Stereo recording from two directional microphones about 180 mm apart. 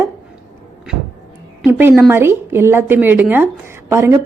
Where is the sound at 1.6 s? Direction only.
10° right (ahead or behind).